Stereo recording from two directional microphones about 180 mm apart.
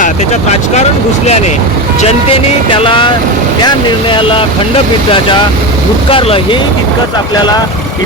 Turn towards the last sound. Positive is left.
turn(degrees=30)  # may be behind; listen again after turning